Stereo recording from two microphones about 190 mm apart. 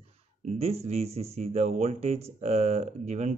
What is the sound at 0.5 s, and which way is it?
Speech, 35° right (ahead or behind).